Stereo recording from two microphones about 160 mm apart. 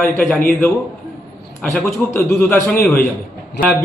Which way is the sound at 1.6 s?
10° left (ahead or behind).